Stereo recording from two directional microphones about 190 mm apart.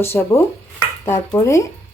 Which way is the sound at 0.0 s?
10° left (ahead or behind).